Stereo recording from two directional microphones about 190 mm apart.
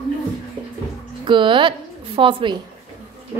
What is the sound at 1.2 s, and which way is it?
A woman's voice, 25° right (ahead or behind).